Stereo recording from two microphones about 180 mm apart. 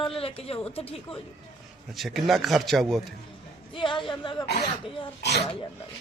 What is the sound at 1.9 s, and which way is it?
A man's voice, centre (ahead or behind).